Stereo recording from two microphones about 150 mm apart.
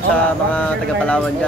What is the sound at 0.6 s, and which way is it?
Speech, 10° left (ahead or behind).